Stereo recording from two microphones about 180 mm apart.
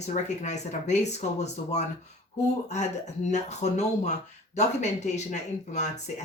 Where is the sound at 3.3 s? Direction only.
40° left (ahead or behind).